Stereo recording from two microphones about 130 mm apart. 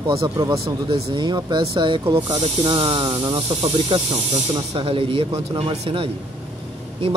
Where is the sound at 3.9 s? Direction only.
45° right (ahead or behind).